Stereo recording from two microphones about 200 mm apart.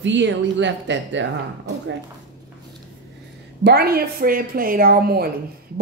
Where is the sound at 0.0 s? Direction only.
65° right (ahead or behind).